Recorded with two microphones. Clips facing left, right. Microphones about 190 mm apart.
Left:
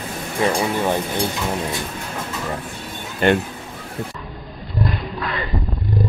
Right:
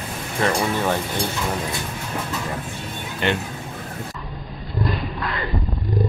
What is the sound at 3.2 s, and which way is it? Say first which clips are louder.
Speech: left 6 dB; 45° left (ahead or behind).